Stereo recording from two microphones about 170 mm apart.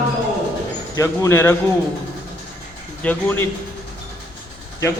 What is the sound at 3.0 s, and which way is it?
Speech, 10° left (ahead or behind).